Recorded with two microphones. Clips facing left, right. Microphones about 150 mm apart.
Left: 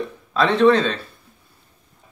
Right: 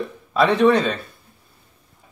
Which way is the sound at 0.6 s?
10° right (ahead or behind).